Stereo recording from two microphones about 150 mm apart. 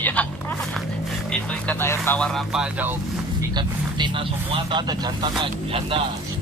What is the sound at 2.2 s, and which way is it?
Speech, centre (ahead or behind).